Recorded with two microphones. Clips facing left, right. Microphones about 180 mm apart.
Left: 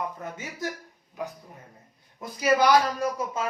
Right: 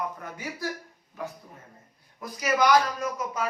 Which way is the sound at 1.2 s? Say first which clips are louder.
Left 2 dB; 15° left (ahead or behind).